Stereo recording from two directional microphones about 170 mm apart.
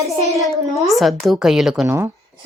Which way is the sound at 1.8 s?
15° right (ahead or behind).